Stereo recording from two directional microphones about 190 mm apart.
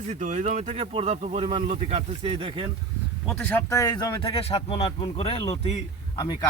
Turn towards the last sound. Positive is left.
turn(degrees=20)  # may be behind; listen again after turning